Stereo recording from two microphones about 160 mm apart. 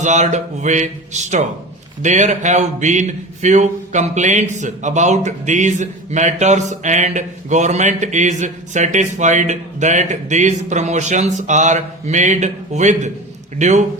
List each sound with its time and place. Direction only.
0.0 s speech: 50° right (ahead or behind)